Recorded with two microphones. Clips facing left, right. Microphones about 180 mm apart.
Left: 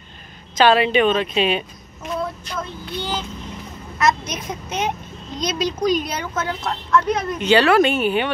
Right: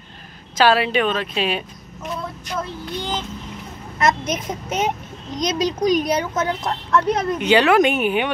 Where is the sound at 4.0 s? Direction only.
50° right (ahead or behind).